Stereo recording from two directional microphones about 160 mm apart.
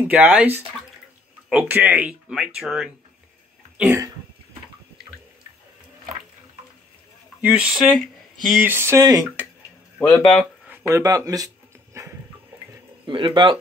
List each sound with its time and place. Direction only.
0.1 s speech: 10° right (ahead or behind)
3.7 s throat clearing: 10° right (ahead or behind)
7.4 s speech: 5° right (ahead or behind); by 9.2 s 20° right (ahead or behind)
9.9 s speech: 15° left (ahead or behind)
10.7 s dog: 15° right (ahead or behind)
13.0 s speech: 30° right (ahead or behind)